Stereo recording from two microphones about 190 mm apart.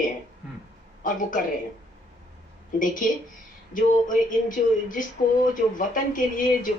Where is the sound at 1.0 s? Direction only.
45° left (ahead or behind).